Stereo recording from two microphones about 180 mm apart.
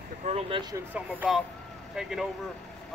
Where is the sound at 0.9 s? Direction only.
5° right (ahead or behind).